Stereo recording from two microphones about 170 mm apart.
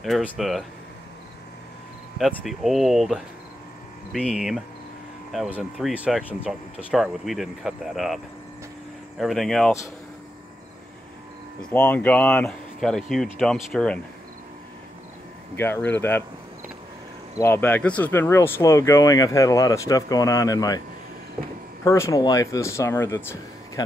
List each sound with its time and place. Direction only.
0.0 s speech: centre (ahead or behind)
2.1 s speech: centre (ahead or behind)
9.2 s speech: centre (ahead or behind)
11.7 s speech: 10° left (ahead or behind)
15.5 s speech: 15° left (ahead or behind)
17.4 s speech: 15° left (ahead or behind)
21.8 s speech: 15° left (ahead or behind)